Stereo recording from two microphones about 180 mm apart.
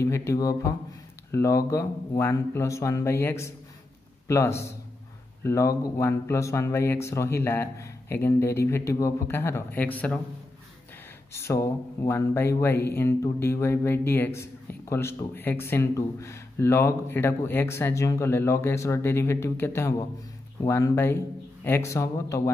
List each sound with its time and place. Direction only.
0.0 s speech: 15° left (ahead or behind)
11.3 s speech: 15° left (ahead or behind)